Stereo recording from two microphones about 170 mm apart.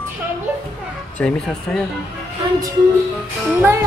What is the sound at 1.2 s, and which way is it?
Speech, 5° left (ahead or behind).